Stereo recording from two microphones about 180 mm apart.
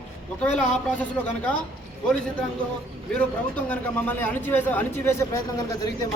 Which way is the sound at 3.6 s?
10° left (ahead or behind).